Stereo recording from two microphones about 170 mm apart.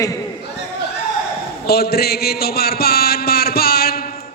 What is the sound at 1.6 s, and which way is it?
A man's voice, 65° left (ahead or behind).